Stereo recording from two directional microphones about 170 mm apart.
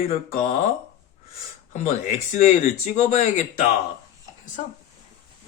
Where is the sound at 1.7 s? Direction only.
40° left (ahead or behind).